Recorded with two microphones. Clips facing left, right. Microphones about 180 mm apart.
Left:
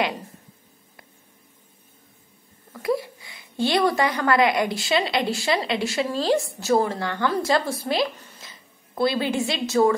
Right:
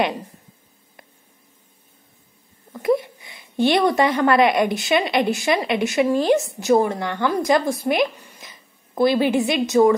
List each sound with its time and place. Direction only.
2.7 s speech: 20° right (ahead or behind)